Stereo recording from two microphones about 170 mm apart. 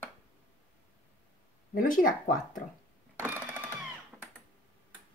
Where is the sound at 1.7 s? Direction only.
55° left (ahead or behind).